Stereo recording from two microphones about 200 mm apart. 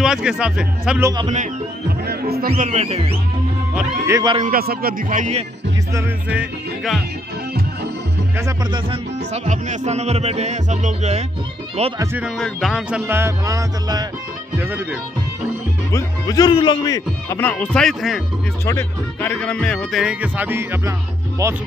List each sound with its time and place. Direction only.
0.0 s speech: 5° right (ahead or behind)
1.3 s speech: 45° right (ahead or behind)
2.5 s music: 30° right (ahead or behind)
3.7 s music: 15° right (ahead or behind)
4.4 s speech: 50° right (ahead or behind)
5.9 s speech: 5° right (ahead or behind)
8.4 s music: 15° right (ahead or behind)
8.9 s music: 35° right (ahead or behind)
12.0 s music: 10° right (ahead or behind)
12.4 s music: centre (ahead or behind)
15.9 s speech: 20° left (ahead or behind); by 20.9 s 10° right (ahead or behind)